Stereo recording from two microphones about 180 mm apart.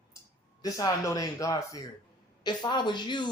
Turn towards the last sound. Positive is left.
turn(degrees=25)  # may be behind; listen again after turning